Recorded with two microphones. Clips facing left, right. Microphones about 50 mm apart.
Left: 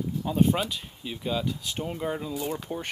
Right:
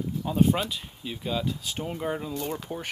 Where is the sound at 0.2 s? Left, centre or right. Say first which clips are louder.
Even; centre.